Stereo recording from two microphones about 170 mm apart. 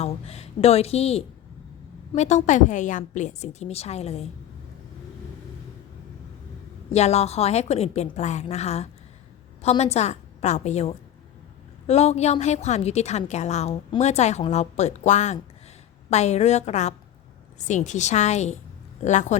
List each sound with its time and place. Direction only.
0.0 s a woman's voice: 35° left (ahead or behind)
6.9 s a woman's voice: 40° left (ahead or behind)